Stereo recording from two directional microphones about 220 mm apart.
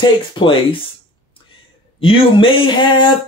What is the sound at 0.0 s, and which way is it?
Speech, 25° left (ahead or behind).